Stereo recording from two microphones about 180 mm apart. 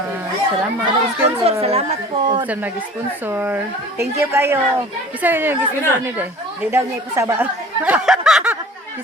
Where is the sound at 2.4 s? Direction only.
10° right (ahead or behind).